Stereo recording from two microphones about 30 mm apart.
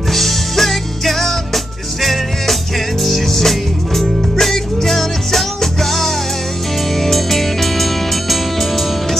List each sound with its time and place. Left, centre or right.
0.1 s music: centre